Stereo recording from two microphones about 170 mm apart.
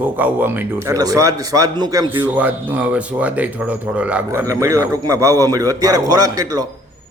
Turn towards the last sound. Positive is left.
turn(degrees=-20)  # may be behind; listen again after turning